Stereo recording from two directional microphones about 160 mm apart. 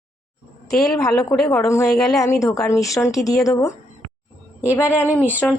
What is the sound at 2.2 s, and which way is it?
Speech, 20° left (ahead or behind).